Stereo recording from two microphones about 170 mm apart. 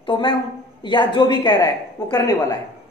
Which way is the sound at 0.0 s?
30° left (ahead or behind).